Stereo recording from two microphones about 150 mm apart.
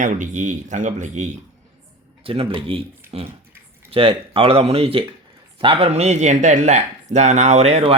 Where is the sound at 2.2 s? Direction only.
40° right (ahead or behind).